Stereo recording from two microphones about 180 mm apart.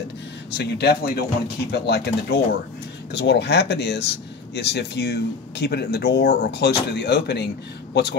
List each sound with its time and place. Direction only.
0.5 s speech: 65° left (ahead or behind)
3.1 s speech: 70° left (ahead or behind)